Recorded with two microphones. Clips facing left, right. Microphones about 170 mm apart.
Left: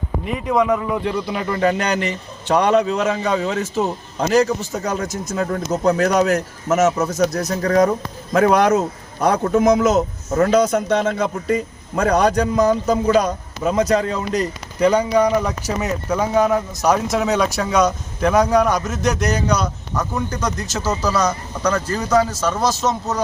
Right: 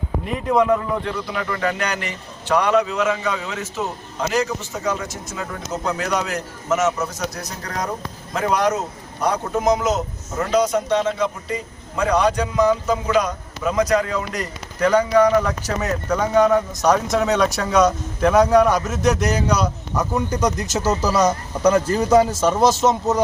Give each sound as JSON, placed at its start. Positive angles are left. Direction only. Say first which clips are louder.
{"t": 0.3, "sound": "a man's voice", "louder": "even", "side_deg": 5}
{"t": 1.0, "sound": "a man's voice", "louder": "left 3 dB", "side_deg": 20}